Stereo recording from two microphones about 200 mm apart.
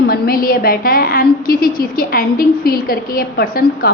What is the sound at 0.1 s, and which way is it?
A woman's voice, 45° left (ahead or behind).